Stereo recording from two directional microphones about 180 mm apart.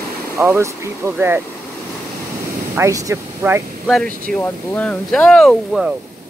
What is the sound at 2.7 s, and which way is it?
Speech, 15° right (ahead or behind).